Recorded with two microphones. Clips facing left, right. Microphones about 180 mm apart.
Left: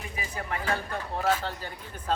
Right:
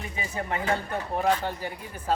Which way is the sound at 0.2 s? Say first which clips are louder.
Right 4 dB; 25° right (ahead or behind).